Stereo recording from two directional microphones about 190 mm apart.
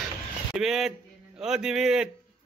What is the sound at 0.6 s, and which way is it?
A man's voice, centre (ahead or behind).